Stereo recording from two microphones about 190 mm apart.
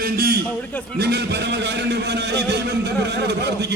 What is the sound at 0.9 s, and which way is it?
A man's voice, 60° right (ahead or behind).